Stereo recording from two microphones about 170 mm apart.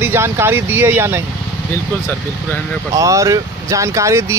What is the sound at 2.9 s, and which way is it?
Speech, 20° right (ahead or behind).